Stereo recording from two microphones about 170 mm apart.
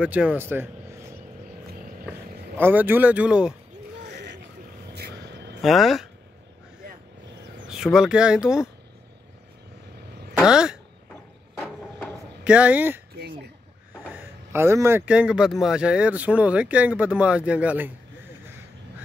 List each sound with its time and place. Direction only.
0.0 s speech: 5° right (ahead or behind)
2.5 s speech: 10° right (ahead or behind)
4.0 s a sound: 90° right
4.9 s vehicle: 75° right (ahead or behind)
5.6 s speech: centre (ahead or behind)
7.7 s speech: 5° right (ahead or behind)
10.3 s a sound: 5° right (ahead or behind)
12.4 s speech: 10° right (ahead or behind)
13.1 s throat clearing: 70° right (ahead or behind)
14.1 s speech: 15° right (ahead or behind)